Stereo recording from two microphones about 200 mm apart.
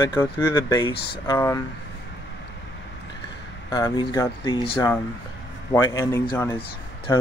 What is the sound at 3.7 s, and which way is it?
Speech, 15° left (ahead or behind).